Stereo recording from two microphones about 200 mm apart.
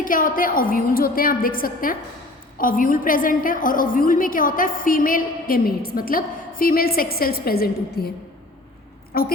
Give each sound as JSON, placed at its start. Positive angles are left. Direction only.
{"t": 0.0, "sound": "a woman's voice", "side_deg": 40}
{"t": 9.1, "sound": "a woman's voice", "side_deg": 50}